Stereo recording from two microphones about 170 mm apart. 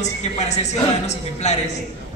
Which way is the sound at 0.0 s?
40° left (ahead or behind).